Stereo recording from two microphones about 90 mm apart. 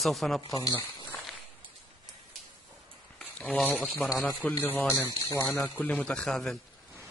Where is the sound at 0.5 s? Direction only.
40° left (ahead or behind).